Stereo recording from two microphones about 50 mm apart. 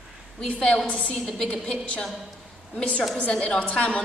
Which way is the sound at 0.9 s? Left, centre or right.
Left.